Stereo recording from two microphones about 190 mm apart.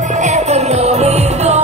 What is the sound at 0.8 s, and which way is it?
Music, 35° right (ahead or behind).